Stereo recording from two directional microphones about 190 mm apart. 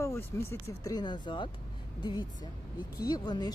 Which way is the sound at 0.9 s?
20° left (ahead or behind).